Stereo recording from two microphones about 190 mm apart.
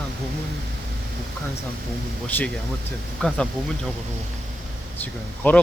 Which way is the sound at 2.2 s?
10° left (ahead or behind).